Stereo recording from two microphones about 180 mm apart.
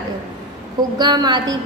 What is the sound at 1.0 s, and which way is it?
Speech, 25° right (ahead or behind).